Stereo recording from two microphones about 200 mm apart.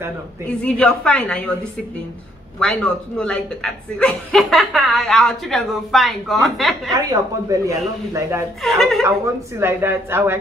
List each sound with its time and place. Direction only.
0.7 s speech: 5° left (ahead or behind)
6.9 s speech: 15° right (ahead or behind)
8.6 s speech: centre (ahead or behind)
9.0 s speech: 15° right (ahead or behind)